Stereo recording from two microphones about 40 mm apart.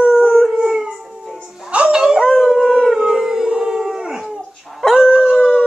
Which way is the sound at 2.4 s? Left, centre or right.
Centre.